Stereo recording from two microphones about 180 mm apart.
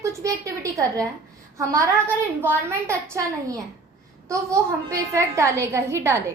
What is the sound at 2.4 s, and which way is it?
Speech, 15° right (ahead or behind).